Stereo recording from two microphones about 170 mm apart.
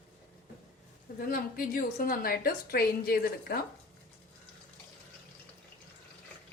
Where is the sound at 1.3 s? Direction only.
60° left (ahead or behind).